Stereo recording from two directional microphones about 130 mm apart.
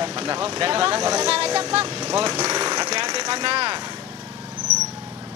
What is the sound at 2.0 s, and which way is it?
Speech, 30° right (ahead or behind).